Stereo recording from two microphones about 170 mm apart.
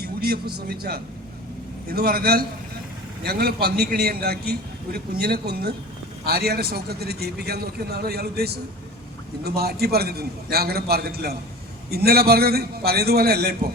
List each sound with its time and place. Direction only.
0.0 s a man's voice: 65° right (ahead or behind)